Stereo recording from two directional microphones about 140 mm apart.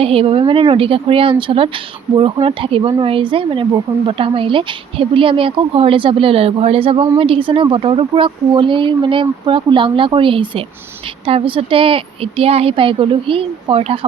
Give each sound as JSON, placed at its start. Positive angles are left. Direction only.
{"t": 0.0, "sound": "speech", "side_deg": -45}